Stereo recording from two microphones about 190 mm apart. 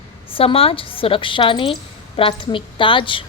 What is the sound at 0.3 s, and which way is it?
A woman's voice, 30° left (ahead or behind).